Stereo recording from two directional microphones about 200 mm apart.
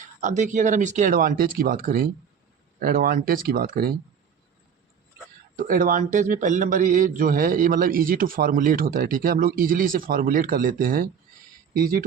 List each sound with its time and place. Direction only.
0.2 s speech: 40° right (ahead or behind)
5.5 s speech: 45° right (ahead or behind)